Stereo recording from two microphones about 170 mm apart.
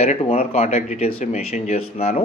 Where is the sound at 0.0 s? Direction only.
35° left (ahead or behind).